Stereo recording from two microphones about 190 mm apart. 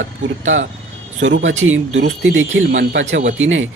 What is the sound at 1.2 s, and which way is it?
Speech, 90° right.